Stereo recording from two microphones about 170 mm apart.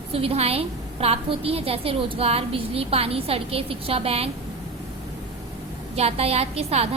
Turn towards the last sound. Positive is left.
turn(degrees=-40)  # may be behind; listen again after turning